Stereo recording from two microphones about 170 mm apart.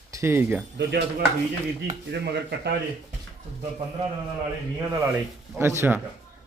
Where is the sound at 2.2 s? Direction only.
80° right.